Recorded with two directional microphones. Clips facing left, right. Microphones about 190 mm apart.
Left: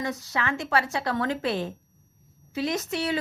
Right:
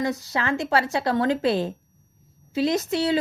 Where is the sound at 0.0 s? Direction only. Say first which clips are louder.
Right 4 dB; 30° right (ahead or behind).